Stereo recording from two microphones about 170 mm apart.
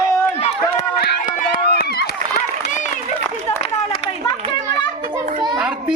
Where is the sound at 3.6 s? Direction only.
35° left (ahead or behind).